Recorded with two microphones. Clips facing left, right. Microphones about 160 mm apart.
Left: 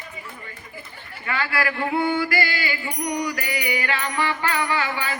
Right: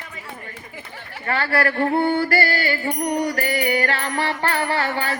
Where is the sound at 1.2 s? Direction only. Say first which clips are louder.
Right 4 dB; 35° right (ahead or behind); by 3.3 s 55° right (ahead or behind).